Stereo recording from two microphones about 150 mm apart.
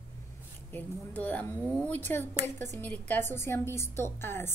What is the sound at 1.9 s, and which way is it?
A woman's voice, 15° left (ahead or behind).